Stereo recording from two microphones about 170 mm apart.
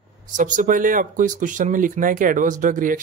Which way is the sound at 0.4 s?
50° right (ahead or behind).